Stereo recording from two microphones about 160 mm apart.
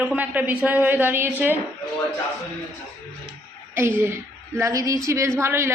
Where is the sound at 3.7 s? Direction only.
15° right (ahead or behind).